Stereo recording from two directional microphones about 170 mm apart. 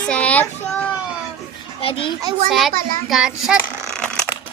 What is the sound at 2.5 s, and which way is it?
A child's voice, centre (ahead or behind).